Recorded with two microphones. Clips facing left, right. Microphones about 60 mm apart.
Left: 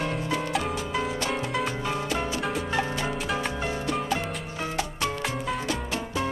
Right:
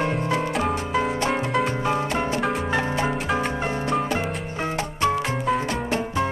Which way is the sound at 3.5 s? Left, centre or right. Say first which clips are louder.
Right 4 dB; right.